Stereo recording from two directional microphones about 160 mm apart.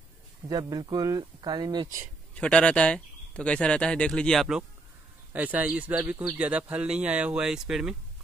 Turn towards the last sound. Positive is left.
turn(degrees=-5)  # may be behind; listen again after turning